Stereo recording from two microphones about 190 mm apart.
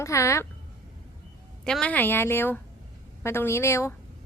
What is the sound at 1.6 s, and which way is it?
A woman's voice, 5° left (ahead or behind).